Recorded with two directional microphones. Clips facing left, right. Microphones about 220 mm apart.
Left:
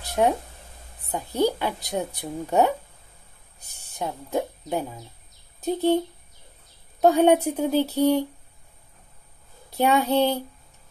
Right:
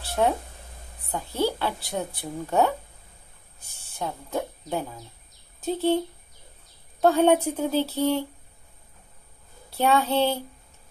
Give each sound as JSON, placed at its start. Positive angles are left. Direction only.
{"t": 0.0, "sound": "a sound", "side_deg": 15}
{"t": 1.1, "sound": "a woman's voice", "side_deg": 15}
{"t": 3.9, "sound": "a woman's voice", "side_deg": 15}
{"t": 9.8, "sound": "a woman's voice", "side_deg": 15}